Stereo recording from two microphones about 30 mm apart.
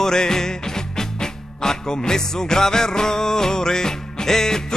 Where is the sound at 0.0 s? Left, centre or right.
Centre.